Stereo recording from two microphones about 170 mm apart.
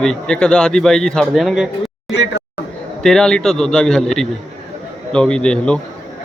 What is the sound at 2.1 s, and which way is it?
Speech, 90° left.